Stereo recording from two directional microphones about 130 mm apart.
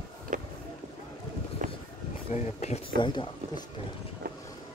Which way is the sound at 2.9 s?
35° left (ahead or behind).